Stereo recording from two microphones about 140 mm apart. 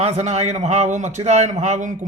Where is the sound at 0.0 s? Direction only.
55° right (ahead or behind).